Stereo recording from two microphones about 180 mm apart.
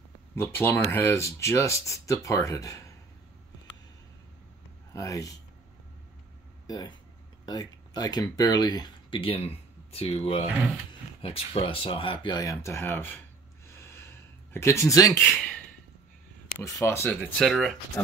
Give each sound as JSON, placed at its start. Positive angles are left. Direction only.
{"t": 0.4, "sound": "speech", "side_deg": 10}
{"t": 4.9, "sound": "speech", "side_deg": 20}
{"t": 6.7, "sound": "speech", "side_deg": 20}
{"t": 13.7, "sound": "a sound", "side_deg": 15}
{"t": 16.5, "sound": "speech", "side_deg": 15}
{"t": 18.0, "sound": "speech", "side_deg": 10}